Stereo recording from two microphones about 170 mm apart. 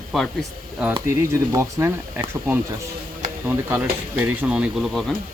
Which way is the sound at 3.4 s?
10° right (ahead or behind).